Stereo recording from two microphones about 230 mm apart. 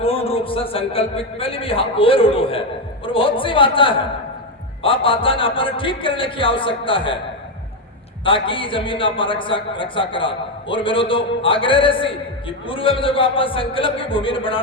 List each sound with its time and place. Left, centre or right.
0.0 s a man's voice: left
8.2 s a man's voice: left